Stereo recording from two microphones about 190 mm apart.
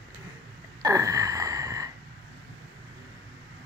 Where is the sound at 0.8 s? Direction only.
20° right (ahead or behind).